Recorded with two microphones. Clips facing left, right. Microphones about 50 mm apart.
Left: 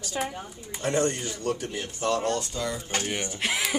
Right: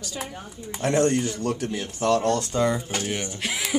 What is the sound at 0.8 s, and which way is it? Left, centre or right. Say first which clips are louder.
Speech: right 5 dB; right.